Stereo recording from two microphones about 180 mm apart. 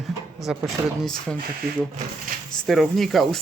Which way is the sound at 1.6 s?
55° right (ahead or behind).